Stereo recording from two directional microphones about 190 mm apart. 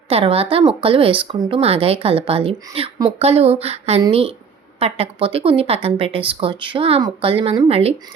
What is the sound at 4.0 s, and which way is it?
Speech, 30° right (ahead or behind).